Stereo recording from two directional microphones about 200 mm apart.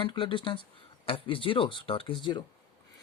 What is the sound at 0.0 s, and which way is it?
Speech, 25° left (ahead or behind).